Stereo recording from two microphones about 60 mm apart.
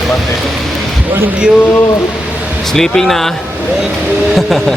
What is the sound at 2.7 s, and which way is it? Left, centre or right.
Speech, centre.